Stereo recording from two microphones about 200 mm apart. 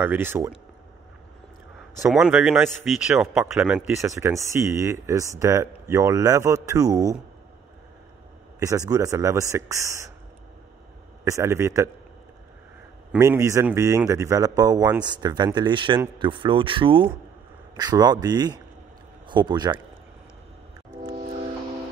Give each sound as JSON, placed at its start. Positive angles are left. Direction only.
{"t": 0.0, "sound": "speech", "side_deg": -10}
{"t": 2.0, "sound": "a man's voice", "side_deg": -5}
{"t": 8.5, "sound": "speech", "side_deg": -15}
{"t": 11.2, "sound": "speech", "side_deg": -15}
{"t": 13.1, "sound": "speech", "side_deg": -10}